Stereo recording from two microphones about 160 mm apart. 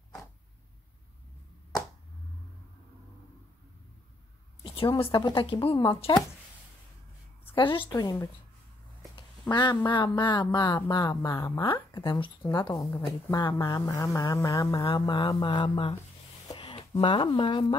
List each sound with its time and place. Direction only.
4.7 s a woman's voice: 30° left (ahead or behind)
7.5 s a woman's voice: 30° left (ahead or behind)
11.3 s speech: 15° left (ahead or behind)
11.6 s a woman's voice: 30° left (ahead or behind)
16.4 s a sound: 30° left (ahead or behind)